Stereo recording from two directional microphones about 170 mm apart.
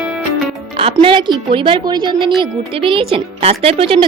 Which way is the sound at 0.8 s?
30° right (ahead or behind).